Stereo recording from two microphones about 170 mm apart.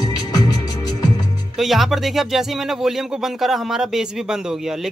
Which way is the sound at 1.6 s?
Centre (ahead or behind).